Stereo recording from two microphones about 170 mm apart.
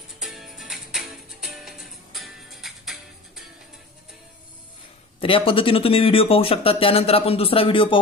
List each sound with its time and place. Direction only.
0.2 s music: centre (ahead or behind)
5.2 s speech: 30° left (ahead or behind)